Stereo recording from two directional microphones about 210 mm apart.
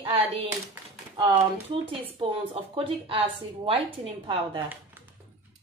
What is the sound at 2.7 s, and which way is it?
A woman's voice, 25° right (ahead or behind).